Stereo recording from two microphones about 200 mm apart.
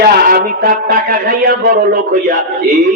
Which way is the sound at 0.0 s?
50° right (ahead or behind).